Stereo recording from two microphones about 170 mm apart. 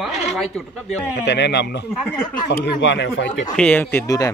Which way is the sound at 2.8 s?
90° left.